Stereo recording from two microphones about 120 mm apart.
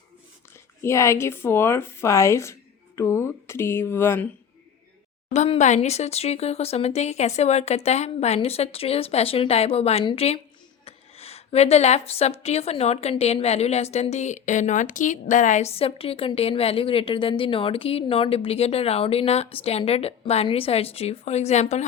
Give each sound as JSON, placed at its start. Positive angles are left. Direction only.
{"t": 0.8, "sound": "speech", "side_deg": 25}
{"t": 5.5, "sound": "a woman's voice", "side_deg": 75}
{"t": 10.0, "sound": "speech", "side_deg": 40}
{"t": 10.8, "sound": "a woman's voice", "side_deg": 60}
{"t": 15.7, "sound": "a woman's voice", "side_deg": 55}